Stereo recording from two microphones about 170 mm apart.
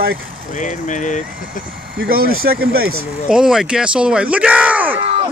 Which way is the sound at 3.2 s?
5° right (ahead or behind).